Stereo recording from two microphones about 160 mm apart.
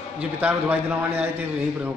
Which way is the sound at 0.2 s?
10° right (ahead or behind).